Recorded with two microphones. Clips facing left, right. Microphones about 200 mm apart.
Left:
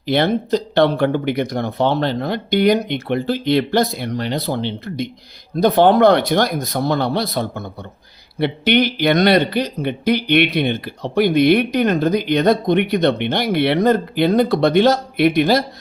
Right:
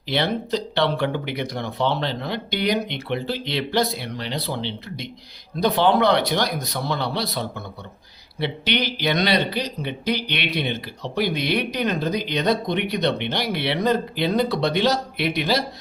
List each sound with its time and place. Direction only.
0.0 s speech: 50° left (ahead or behind)